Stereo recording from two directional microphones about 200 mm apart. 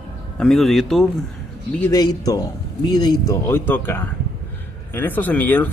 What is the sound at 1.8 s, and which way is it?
A man's voice, 20° left (ahead or behind).